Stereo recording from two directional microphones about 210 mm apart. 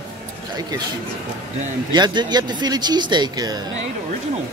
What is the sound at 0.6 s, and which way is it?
Speech, 20° right (ahead or behind).